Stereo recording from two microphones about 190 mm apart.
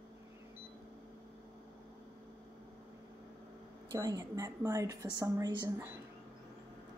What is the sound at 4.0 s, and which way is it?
A woman's voice, 15° right (ahead or behind).